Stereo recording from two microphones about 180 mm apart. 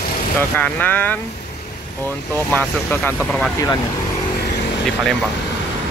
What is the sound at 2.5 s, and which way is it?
Speech, 10° left (ahead or behind).